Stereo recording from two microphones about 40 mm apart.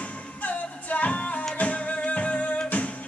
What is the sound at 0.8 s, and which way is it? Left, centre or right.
A capella, left.